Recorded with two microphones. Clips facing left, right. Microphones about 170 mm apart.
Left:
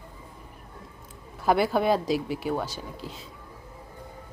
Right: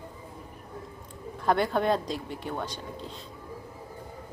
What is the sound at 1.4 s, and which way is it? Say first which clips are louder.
Speech: left 2 dB; 5° left (ahead or behind).